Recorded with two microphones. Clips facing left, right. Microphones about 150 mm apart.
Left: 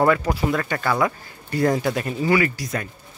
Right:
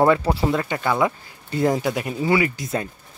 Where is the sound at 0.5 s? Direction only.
20° right (ahead or behind).